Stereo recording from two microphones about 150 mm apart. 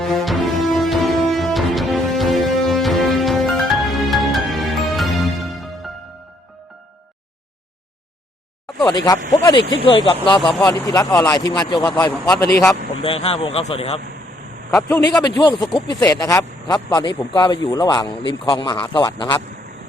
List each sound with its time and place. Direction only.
0.0 s music: centre (ahead or behind)
8.9 s a man's voice: 30° left (ahead or behind)
13.0 s a man's voice: 40° left (ahead or behind)
14.8 s speech: 10° left (ahead or behind)
15.2 s a man's voice: 30° left (ahead or behind)